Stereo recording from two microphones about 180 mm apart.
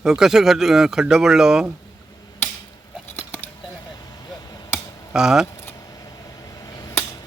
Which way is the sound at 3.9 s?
20° left (ahead or behind).